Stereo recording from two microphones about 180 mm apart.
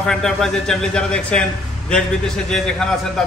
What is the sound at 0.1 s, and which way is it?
A man's voice, centre (ahead or behind).